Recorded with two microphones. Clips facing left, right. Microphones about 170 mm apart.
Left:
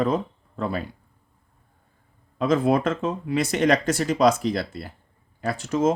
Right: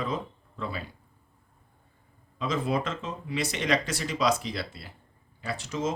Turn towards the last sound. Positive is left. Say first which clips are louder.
# left 9 dB
turn(degrees=50)  # may be behind; listen again after turning